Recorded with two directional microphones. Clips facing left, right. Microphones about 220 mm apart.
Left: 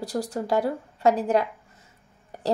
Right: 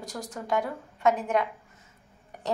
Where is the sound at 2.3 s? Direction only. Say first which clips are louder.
Left 6 dB; 35° left (ahead or behind).